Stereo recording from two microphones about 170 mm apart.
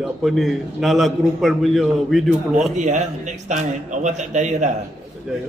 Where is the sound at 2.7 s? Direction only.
45° right (ahead or behind).